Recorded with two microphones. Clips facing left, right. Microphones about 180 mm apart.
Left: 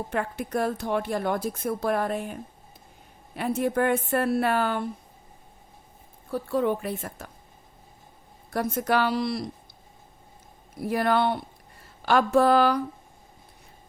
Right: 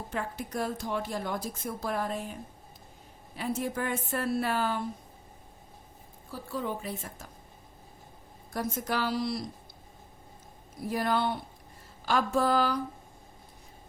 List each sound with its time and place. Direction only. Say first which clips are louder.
0.1 s speech: left 5 dB; 60° left (ahead or behind)
6.3 s speech: left 9 dB; 60° left (ahead or behind)
8.5 s speech: left 7 dB; 65° left (ahead or behind)
10.8 s speech: left 5 dB; 65° left (ahead or behind)